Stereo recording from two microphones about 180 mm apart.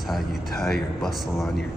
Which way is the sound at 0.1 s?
Centre (ahead or behind).